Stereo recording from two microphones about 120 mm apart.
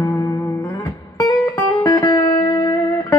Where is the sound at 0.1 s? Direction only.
25° left (ahead or behind).